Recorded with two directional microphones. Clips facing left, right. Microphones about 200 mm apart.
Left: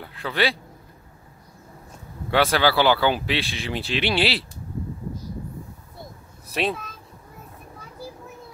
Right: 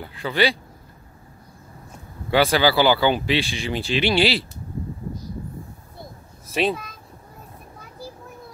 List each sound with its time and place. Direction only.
0.0 s speech: centre (ahead or behind)
2.3 s speech: centre (ahead or behind)
6.4 s speech: centre (ahead or behind)